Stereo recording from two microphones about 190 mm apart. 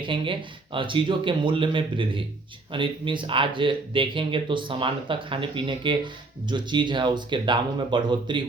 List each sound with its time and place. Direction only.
0.0 s speech: 25° right (ahead or behind)